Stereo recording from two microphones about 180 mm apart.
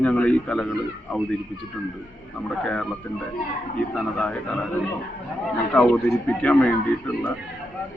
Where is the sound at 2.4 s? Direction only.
5° left (ahead or behind).